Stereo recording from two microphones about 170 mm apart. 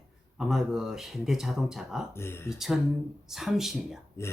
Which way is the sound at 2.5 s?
Centre (ahead or behind).